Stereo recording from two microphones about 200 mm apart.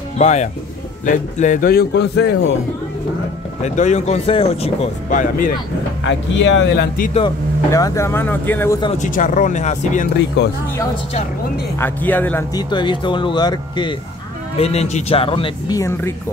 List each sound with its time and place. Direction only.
0.2 s a man's voice: 35° left (ahead or behind); by 2.5 s 60° left (ahead or behind)
3.6 s speech: 35° left (ahead or behind)
6.0 s speech: 65° left (ahead or behind)
7.7 s speech: 15° left (ahead or behind)
8.9 s speech: 40° left (ahead or behind)
10.4 s speech: 60° left (ahead or behind)
11.8 s speech: 10° left (ahead or behind); by 15.8 s 25° left (ahead or behind)